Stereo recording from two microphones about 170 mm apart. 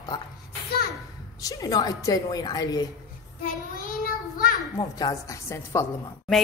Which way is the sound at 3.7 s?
55° left (ahead or behind).